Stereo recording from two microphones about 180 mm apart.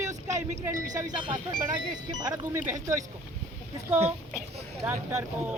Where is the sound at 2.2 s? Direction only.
20° right (ahead or behind).